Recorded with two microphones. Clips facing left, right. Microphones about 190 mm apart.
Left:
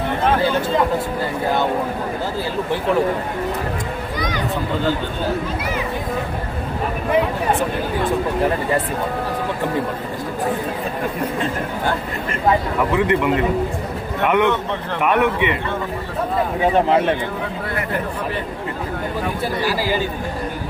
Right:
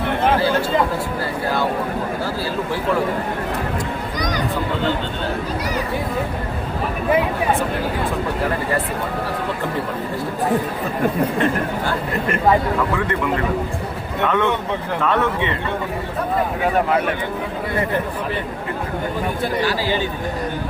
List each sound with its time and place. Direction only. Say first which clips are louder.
13.0 s a man's voice: left 4 dB; 20° left (ahead or behind)
16.7 s speech: left 3 dB; 25° left (ahead or behind)